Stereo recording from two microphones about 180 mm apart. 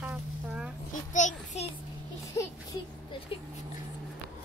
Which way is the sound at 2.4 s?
15° left (ahead or behind).